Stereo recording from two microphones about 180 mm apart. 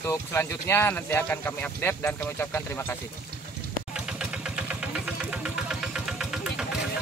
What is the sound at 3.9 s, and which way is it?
Vehicle, 5° right (ahead or behind).